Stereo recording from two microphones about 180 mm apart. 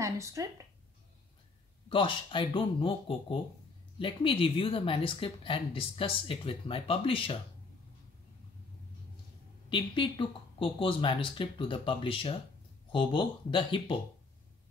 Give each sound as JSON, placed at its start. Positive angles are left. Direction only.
{"t": 0.0, "sound": "speech", "side_deg": -15}
{"t": 1.9, "sound": "a woman's voice", "side_deg": 30}
{"t": 9.7, "sound": "a woman's voice", "side_deg": 25}